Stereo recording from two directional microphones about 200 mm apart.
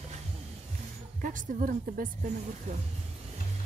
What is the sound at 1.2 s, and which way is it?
Speech, 40° right (ahead or behind).